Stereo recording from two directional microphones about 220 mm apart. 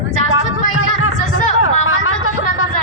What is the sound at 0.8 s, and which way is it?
Chatter, 65° left (ahead or behind).